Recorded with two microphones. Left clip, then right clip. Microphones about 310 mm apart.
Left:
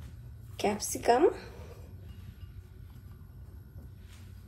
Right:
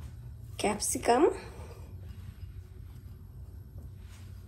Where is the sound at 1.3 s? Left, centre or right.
Right.